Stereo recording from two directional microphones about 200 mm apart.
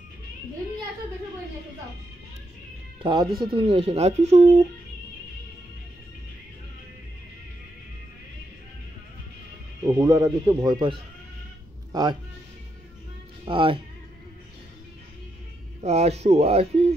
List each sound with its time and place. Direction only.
3.0 s speech: 20° right (ahead or behind)
9.8 s a man's voice: 20° right (ahead or behind)
13.5 s speech: 25° right (ahead or behind)
15.8 s speech: 30° right (ahead or behind)